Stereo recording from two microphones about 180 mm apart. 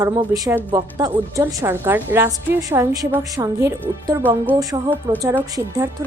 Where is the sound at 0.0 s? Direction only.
15° right (ahead or behind).